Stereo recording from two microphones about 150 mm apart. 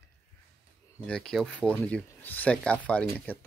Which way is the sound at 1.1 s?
5° left (ahead or behind).